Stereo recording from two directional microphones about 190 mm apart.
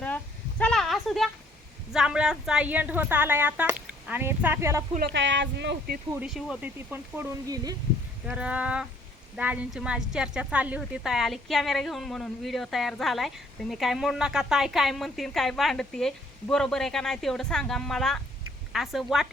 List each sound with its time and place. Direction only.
0.6 s a sound: 5° left (ahead or behind)
1.9 s a woman's voice: 5° right (ahead or behind)
5.1 s speech: 70° right (ahead or behind)
6.1 s a woman's voice: 5° right (ahead or behind); by 7.8 s 20° right (ahead or behind)
8.3 s a woman's voice: 5° right (ahead or behind)